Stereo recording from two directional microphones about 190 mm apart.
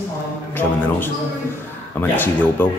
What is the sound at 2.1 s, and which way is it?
Speech, 10° left (ahead or behind).